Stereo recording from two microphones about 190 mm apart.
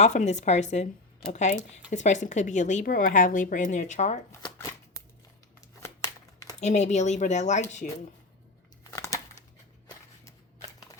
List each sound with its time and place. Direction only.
0.0 s speech: 35° left (ahead or behind)
4.3 s shuffling cards: 15° left (ahead or behind)
5.5 s a sound: 15° left (ahead or behind)
6.6 s a woman's voice: 35° left (ahead or behind)
8.9 s crumpling: 15° left (ahead or behind)